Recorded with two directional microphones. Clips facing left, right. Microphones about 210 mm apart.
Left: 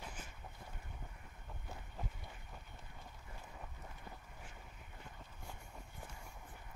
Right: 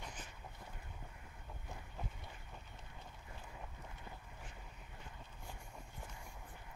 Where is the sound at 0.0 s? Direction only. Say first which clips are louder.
Even; 5° left (ahead or behind).